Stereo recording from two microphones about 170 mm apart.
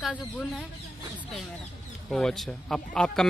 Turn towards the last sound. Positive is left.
turn(degrees=5)  # may be behind; listen again after turning